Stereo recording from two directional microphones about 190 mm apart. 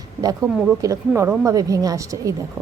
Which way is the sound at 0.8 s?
15° right (ahead or behind).